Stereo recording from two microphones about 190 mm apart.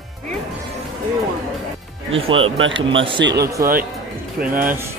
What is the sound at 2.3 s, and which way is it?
Speech, 90° right.